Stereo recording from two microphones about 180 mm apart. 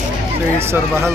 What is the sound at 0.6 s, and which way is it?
Speech, 15° right (ahead or behind).